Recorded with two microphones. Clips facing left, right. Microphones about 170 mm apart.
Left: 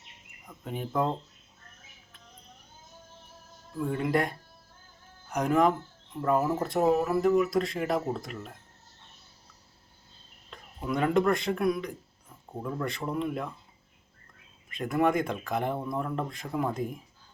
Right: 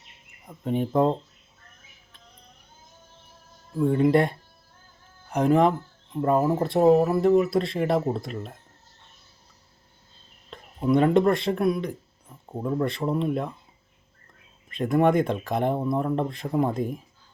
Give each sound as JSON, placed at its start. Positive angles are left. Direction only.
{"t": 0.6, "sound": "speech", "side_deg": -35}
{"t": 3.9, "sound": "speech", "side_deg": -30}
{"t": 5.3, "sound": "speech", "side_deg": -30}
{"t": 10.5, "sound": "speech", "side_deg": -30}
{"t": 14.7, "sound": "speech", "side_deg": -35}